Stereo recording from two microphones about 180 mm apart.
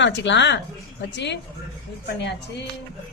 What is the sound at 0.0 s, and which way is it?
A woman's voice, 85° left.